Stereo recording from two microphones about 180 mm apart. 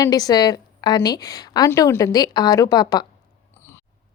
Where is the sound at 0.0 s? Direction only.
20° left (ahead or behind).